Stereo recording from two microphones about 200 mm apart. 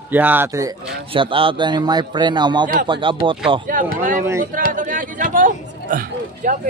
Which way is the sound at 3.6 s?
45° right (ahead or behind).